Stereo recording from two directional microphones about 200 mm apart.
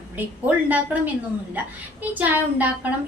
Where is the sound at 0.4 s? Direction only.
10° right (ahead or behind).